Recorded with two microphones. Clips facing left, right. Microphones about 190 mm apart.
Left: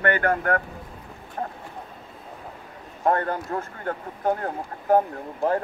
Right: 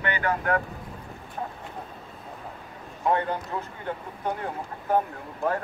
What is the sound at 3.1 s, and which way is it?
Speech, 50° left (ahead or behind).